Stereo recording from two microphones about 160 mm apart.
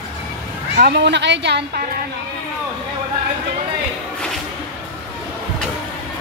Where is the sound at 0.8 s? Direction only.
90° right.